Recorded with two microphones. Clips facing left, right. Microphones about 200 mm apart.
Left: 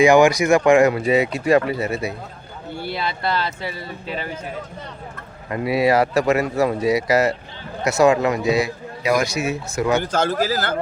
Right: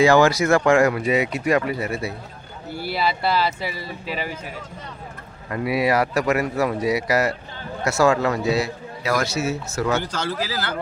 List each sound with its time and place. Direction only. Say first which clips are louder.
0.0 s speech: left 2 dB; 15° left (ahead or behind)
2.7 s speech: right 2 dB; 5° right (ahead or behind)
5.5 s a man's voice: left 3 dB; 25° left (ahead or behind)
10.0 s a man's voice: left 6 dB; 50° left (ahead or behind)